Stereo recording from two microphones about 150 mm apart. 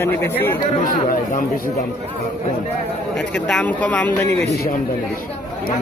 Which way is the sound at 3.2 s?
5° left (ahead or behind).